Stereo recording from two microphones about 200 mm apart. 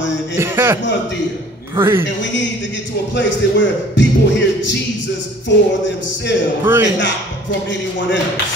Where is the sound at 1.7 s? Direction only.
10° right (ahead or behind).